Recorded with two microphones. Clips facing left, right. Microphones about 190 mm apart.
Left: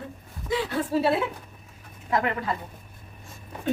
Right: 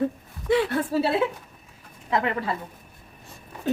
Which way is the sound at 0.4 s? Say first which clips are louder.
Right 6 dB; 65° right (ahead or behind).